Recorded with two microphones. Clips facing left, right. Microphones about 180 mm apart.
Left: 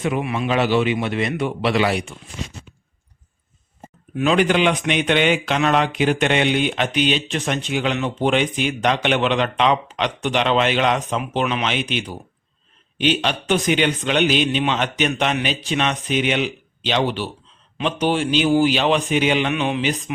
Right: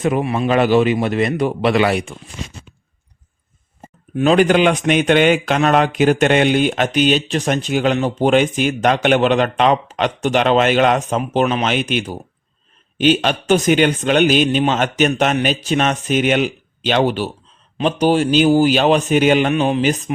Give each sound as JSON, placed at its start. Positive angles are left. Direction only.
{"t": 0.0, "sound": "speech", "side_deg": -40}
{"t": 1.7, "sound": "speech", "side_deg": -55}
{"t": 4.1, "sound": "speech", "side_deg": -35}